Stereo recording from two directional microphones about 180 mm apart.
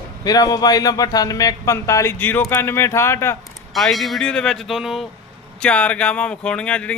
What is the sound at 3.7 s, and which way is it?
A man's voice, centre (ahead or behind).